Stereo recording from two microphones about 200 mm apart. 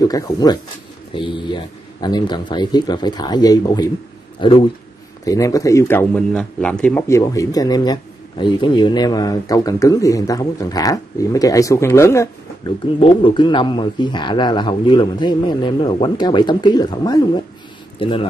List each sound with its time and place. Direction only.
0.0 s speech: 20° left (ahead or behind)
5.2 s speech: 15° left (ahead or behind)
13.0 s speech: 25° left (ahead or behind)